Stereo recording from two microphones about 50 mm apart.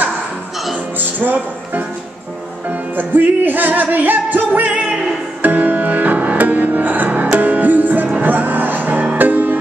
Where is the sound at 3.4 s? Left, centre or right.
Right.